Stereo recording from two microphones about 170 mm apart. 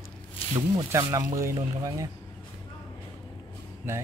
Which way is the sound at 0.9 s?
20° right (ahead or behind).